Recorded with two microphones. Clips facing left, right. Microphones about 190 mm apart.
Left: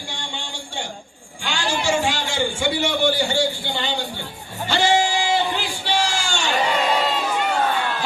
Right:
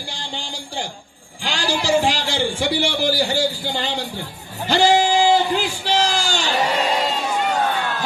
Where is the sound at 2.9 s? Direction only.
35° right (ahead or behind).